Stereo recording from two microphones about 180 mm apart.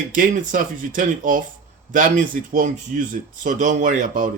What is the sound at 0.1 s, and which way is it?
Speech, 45° right (ahead or behind).